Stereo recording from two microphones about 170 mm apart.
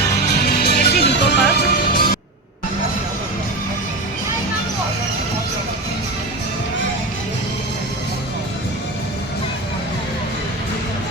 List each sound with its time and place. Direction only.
0.5 s music: 65° left (ahead or behind)
1.1 s music: 80° left; by 2.1 s 65° left (ahead or behind)